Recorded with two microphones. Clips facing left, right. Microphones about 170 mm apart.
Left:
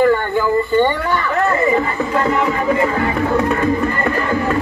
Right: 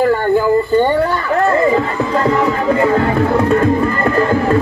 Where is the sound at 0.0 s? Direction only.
35° right (ahead or behind).